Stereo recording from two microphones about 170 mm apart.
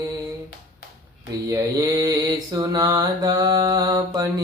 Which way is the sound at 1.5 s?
20° right (ahead or behind).